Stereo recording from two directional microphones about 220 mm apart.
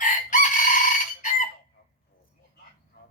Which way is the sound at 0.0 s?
35° left (ahead or behind).